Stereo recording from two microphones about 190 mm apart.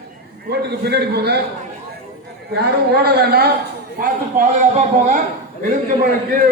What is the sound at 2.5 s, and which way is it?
Speech, 55° right (ahead or behind).